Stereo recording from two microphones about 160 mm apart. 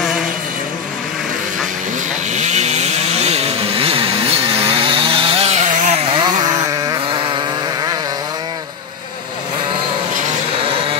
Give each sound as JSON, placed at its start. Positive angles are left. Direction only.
{"t": 2.3, "sound": "chainsaw", "side_deg": -45}
{"t": 6.1, "sound": "vehicle", "side_deg": -25}